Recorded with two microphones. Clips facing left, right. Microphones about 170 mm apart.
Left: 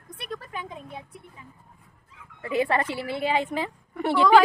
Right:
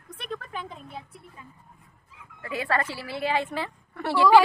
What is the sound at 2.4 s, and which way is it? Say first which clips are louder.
A woman's voice: left 4 dB; 20° left (ahead or behind).